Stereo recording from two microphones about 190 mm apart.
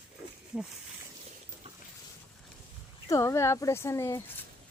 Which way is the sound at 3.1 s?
15° left (ahead or behind).